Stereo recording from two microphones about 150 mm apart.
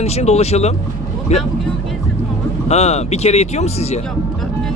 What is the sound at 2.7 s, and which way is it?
Speech, 45° left (ahead or behind).